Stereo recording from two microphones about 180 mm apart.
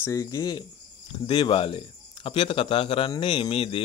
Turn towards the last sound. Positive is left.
turn(degrees=30)  # may be behind; listen again after turning